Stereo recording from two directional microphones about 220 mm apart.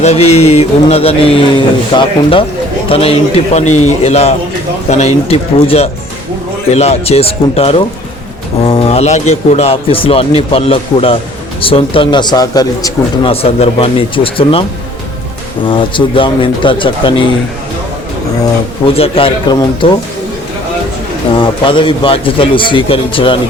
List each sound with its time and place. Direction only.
0.0 s speech: 30° left (ahead or behind)
15.7 s speech: 20° left (ahead or behind)
18.9 s speech: 25° left (ahead or behind)
21.3 s speech: 25° left (ahead or behind)